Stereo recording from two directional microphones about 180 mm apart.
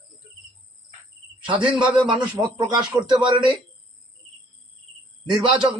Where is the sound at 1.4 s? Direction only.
25° right (ahead or behind).